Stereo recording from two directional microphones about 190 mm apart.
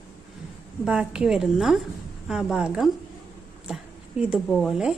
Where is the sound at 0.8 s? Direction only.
5° right (ahead or behind).